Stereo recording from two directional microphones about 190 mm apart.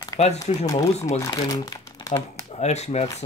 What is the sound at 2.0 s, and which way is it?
Crumpling, 15° left (ahead or behind).